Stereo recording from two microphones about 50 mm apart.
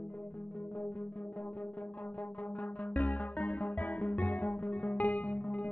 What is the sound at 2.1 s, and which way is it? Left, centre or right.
Music, left.